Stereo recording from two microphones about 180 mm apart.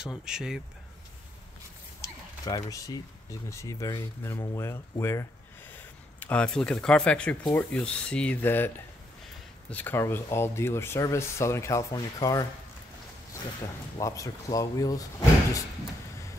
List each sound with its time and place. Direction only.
0.0 s speech: 5° right (ahead or behind)
2.0 s speech: 20° left (ahead or behind)
13.9 s speech: 20° left (ahead or behind)